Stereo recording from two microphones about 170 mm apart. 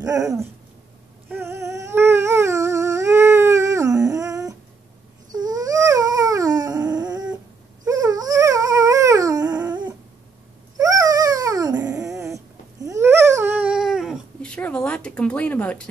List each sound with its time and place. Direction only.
0.0 s dog: 20° right (ahead or behind)
1.3 s a sound: 15° right (ahead or behind)
5.3 s dog: 20° right (ahead or behind); by 15.9 s 10° left (ahead or behind)